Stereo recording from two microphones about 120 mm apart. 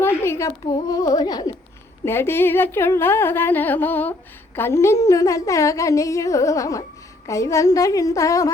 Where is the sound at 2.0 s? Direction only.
20° left (ahead or behind).